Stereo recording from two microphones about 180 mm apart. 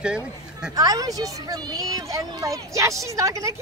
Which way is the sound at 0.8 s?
20° right (ahead or behind).